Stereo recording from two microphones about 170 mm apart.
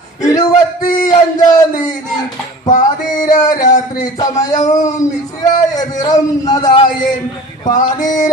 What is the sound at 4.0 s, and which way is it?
Speech, 20° left (ahead or behind).